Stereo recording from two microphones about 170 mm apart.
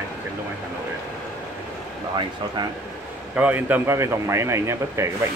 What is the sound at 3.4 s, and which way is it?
Speech, 10° right (ahead or behind).